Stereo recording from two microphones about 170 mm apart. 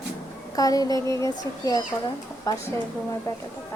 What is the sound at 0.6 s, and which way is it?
A woman's voice, 20° left (ahead or behind).